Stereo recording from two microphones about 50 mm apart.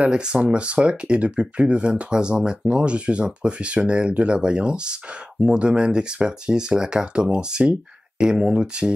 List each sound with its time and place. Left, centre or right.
0.0 s speech: centre